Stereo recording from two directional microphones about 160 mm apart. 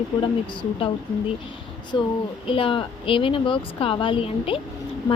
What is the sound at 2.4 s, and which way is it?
Speech, 35° left (ahead or behind).